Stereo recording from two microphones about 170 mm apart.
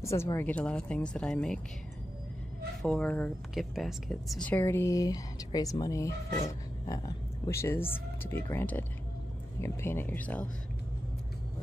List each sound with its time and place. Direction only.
0.0 s speech: 15° left (ahead or behind)
2.8 s speech: 5° left (ahead or behind)